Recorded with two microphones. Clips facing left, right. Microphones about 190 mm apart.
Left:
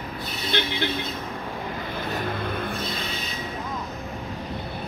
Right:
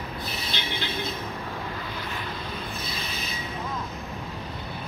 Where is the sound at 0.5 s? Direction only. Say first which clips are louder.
Left 13 dB; 55° left (ahead or behind).